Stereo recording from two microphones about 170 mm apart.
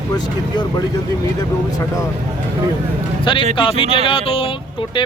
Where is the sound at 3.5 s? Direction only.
30° left (ahead or behind).